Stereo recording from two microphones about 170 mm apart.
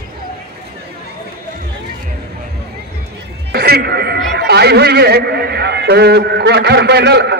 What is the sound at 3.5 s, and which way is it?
A man's voice, 65° right (ahead or behind).